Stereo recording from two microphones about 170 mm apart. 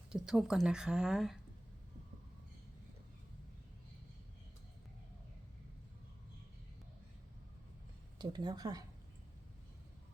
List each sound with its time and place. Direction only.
0.1 s speech: 5° right (ahead or behind)
8.2 s speech: 25° right (ahead or behind)